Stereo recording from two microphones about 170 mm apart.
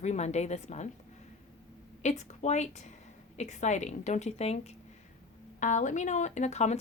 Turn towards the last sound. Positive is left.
turn(degrees=40)  # may be behind; listen again after turning